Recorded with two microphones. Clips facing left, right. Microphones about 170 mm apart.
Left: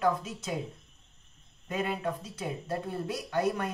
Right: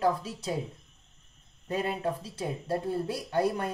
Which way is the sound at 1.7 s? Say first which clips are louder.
Right 2 dB; 35° right (ahead or behind).